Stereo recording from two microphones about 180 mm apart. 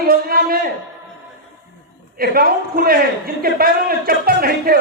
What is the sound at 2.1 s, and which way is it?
Speech, 55° right (ahead or behind).